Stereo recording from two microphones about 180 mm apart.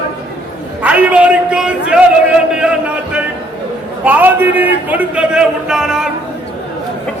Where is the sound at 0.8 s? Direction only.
5° right (ahead or behind).